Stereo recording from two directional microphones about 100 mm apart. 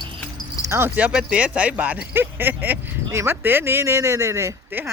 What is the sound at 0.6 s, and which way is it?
Keys jangling, 30° right (ahead or behind).